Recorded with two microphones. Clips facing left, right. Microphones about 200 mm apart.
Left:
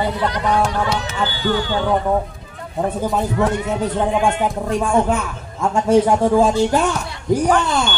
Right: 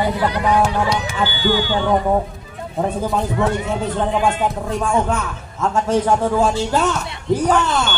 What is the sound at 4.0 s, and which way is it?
Speech, 15° left (ahead or behind).